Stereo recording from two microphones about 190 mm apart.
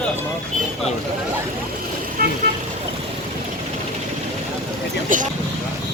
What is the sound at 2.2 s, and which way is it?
Speech, 50° right (ahead or behind).